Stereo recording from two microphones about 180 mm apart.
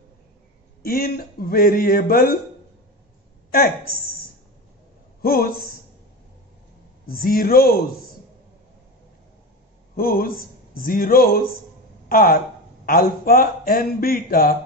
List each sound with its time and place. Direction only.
0.8 s speech: 55° left (ahead or behind)
5.2 s a man's voice: 55° left (ahead or behind)
7.1 s speech: 55° left (ahead or behind)
9.9 s speech: 55° left (ahead or behind)